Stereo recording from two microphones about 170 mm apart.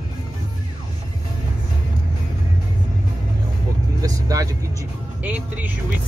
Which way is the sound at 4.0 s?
20° right (ahead or behind).